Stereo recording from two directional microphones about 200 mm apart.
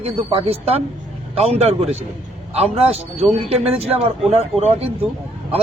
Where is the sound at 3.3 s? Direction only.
30° right (ahead or behind).